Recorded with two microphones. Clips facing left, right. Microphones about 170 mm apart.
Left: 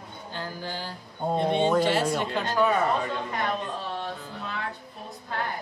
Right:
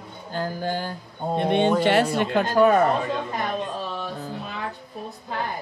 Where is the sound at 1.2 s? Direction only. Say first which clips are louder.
Right 1 dB; centre (ahead or behind).